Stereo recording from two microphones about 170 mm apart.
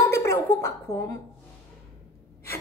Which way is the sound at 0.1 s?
15° left (ahead or behind).